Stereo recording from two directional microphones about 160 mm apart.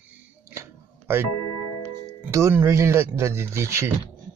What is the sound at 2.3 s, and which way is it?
Speech, 15° right (ahead or behind).